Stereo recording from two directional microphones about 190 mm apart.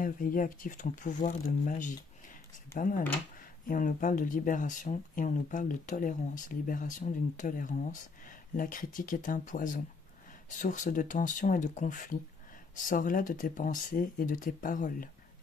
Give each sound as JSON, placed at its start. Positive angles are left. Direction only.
{"t": 0.0, "sound": "speech", "side_deg": 45}